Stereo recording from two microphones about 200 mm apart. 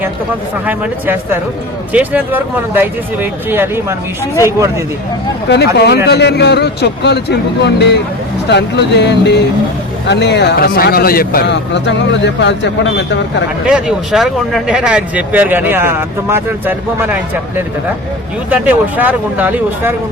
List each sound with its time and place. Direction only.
0.6 s speech: 10° right (ahead or behind)
5.5 s speech: 55° left (ahead or behind)
13.7 s speech: 5° right (ahead or behind)
18.5 s speech: 10° right (ahead or behind)